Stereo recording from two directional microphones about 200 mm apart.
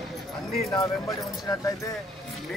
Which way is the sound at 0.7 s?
20° left (ahead or behind).